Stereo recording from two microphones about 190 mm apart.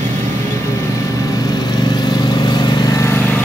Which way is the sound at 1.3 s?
20° left (ahead or behind).